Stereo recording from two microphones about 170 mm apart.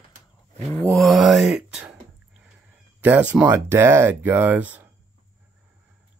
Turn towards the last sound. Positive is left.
turn(degrees=-10)  # may be behind; listen again after turning